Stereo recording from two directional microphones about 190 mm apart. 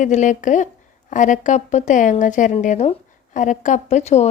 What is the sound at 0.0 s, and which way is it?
Speech, 40° left (ahead or behind).